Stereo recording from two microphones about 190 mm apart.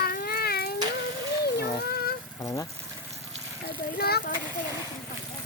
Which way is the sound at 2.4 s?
15° left (ahead or behind).